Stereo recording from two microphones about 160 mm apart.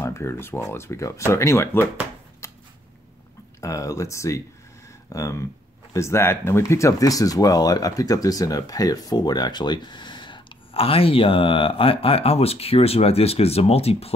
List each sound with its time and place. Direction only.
0.0 s speech: 15° left (ahead or behind)
2.4 s a sound: 20° left (ahead or behind)
3.6 s speech: 20° left (ahead or behind); by 14.1 s 40° left (ahead or behind)